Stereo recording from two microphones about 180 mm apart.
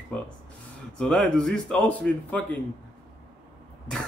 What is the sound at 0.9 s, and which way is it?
Speech, 5° left (ahead or behind).